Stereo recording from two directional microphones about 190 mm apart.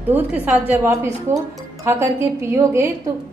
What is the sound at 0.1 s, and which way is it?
A woman's voice, 10° right (ahead or behind).